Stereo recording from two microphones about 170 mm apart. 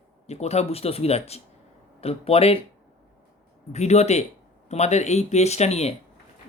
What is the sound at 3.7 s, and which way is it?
Speech, 40° left (ahead or behind).